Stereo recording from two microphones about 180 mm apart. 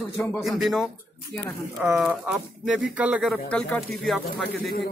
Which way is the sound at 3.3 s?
5° left (ahead or behind).